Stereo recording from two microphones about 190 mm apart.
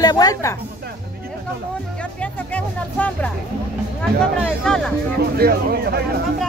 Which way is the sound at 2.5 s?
5° left (ahead or behind).